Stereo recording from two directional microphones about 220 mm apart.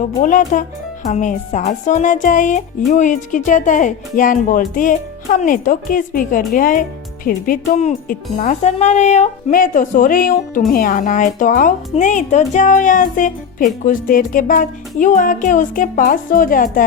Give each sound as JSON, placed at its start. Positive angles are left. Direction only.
{"t": 0.0, "sound": "speech", "side_deg": 35}